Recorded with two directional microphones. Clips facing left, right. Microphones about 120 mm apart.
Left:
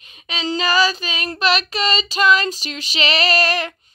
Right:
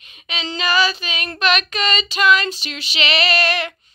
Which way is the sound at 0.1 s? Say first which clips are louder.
Left 4 dB; 35° left (ahead or behind).